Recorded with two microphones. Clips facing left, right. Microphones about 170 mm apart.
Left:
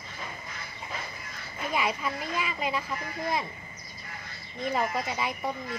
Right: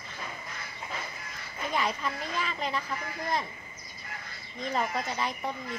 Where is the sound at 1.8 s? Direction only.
10° left (ahead or behind).